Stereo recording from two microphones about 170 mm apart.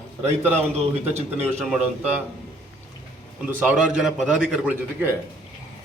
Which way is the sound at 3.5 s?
10° right (ahead or behind).